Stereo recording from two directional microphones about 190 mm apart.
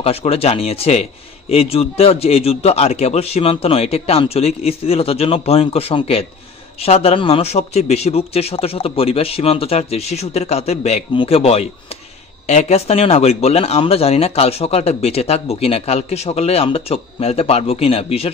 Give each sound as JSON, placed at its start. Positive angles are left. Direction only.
{"t": 0.0, "sound": "speech", "side_deg": 30}